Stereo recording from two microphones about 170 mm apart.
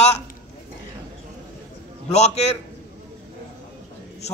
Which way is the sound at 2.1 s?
40° left (ahead or behind).